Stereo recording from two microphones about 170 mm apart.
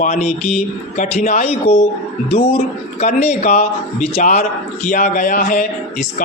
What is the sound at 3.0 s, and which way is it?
A man's voice, 45° left (ahead or behind).